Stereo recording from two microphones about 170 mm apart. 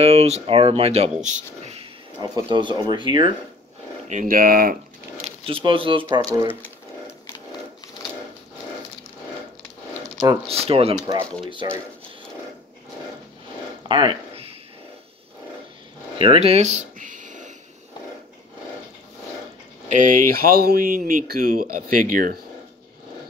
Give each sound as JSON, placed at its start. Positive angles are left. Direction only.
{"t": 0.0, "sound": "speech", "side_deg": -35}
{"t": 2.1, "sound": "speech", "side_deg": -25}
{"t": 4.1, "sound": "speech", "side_deg": -50}
{"t": 5.2, "sound": "speech", "side_deg": -30}
{"t": 10.5, "sound": "speech", "side_deg": -35}
{"t": 11.0, "sound": "speech", "side_deg": -20}
{"t": 13.8, "sound": "a sound", "side_deg": -30}
{"t": 16.2, "sound": "a sound", "side_deg": -35}
{"t": 19.9, "sound": "speech", "side_deg": -50}